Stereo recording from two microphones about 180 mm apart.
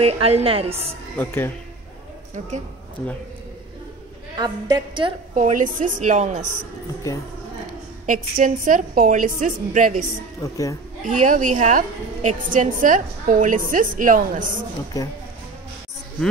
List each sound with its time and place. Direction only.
0.0 s a woman's voice: 35° right (ahead or behind)
1.1 s a woman's voice: 15° left (ahead or behind)
4.4 s a woman's voice: 25° right (ahead or behind)
5.3 s a woman's voice: 45° right (ahead or behind)
8.1 s a woman's voice: 45° right (ahead or behind)
10.4 s a woman's voice: 20° left (ahead or behind)
11.1 s a woman's voice: 45° right (ahead or behind)